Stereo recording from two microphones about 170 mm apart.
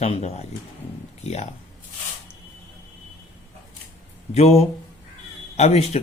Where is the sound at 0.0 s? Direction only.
40° left (ahead or behind).